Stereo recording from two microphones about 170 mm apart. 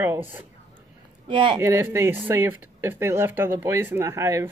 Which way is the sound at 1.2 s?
30° right (ahead or behind).